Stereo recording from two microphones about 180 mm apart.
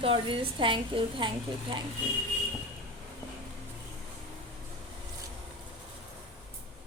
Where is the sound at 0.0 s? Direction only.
30° right (ahead or behind).